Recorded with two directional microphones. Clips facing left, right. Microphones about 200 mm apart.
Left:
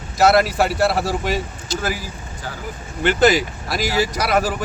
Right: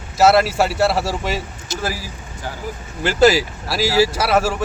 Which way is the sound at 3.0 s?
5° right (ahead or behind).